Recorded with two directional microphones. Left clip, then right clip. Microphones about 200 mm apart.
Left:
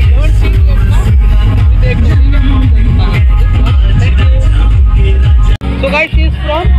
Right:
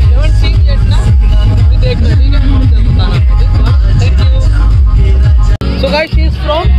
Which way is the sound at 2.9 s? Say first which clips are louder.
Even; 35° right (ahead or behind).